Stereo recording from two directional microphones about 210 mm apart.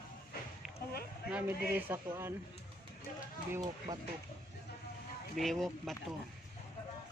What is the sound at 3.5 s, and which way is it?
Speech, 15° right (ahead or behind).